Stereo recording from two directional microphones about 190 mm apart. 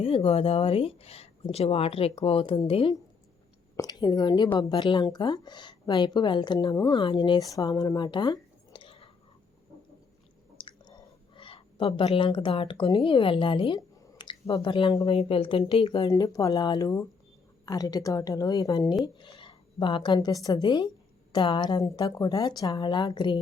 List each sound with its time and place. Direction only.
0.0 s a woman's voice: 30° left (ahead or behind)
10.6 s a woman's voice: 25° left (ahead or behind)